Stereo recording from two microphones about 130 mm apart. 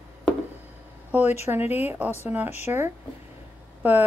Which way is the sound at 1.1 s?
15° right (ahead or behind).